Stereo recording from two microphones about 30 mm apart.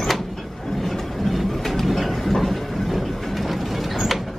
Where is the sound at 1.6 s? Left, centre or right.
Centre.